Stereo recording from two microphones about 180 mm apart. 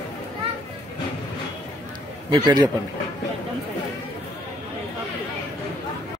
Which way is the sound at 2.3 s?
25° right (ahead or behind).